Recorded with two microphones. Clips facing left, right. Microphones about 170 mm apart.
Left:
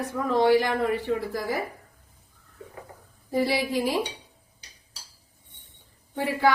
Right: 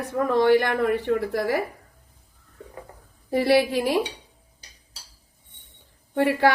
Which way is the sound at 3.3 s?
70° right (ahead or behind).